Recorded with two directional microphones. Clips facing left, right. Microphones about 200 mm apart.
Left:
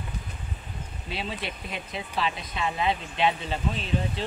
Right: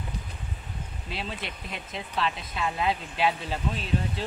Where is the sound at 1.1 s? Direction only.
Centre (ahead or behind).